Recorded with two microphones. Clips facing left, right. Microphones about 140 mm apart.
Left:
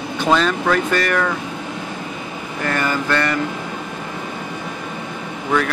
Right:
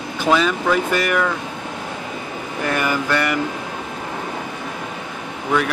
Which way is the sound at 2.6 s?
10° right (ahead or behind).